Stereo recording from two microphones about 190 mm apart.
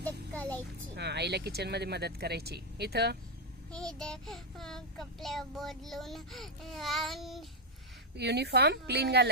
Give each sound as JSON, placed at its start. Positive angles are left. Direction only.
{"t": 0.0, "sound": "music", "side_deg": 10}
{"t": 0.9, "sound": "speech", "side_deg": -60}
{"t": 3.7, "sound": "child singing", "side_deg": 5}
{"t": 8.1, "sound": "speech", "side_deg": -60}